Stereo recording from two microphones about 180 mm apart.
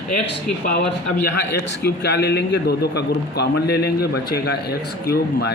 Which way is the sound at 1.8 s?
70° left (ahead or behind).